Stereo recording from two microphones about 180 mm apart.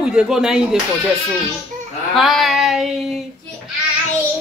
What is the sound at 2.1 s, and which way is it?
A woman's voice, centre (ahead or behind).